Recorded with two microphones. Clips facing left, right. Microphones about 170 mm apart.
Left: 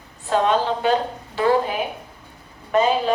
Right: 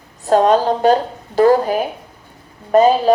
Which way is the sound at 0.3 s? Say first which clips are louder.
Right 6 dB; 40° right (ahead or behind).